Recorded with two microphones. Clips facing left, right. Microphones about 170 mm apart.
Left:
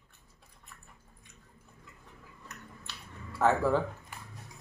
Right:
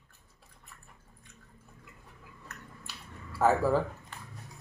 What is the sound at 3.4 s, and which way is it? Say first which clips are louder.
Speech: right 1 dB; 5° right (ahead or behind).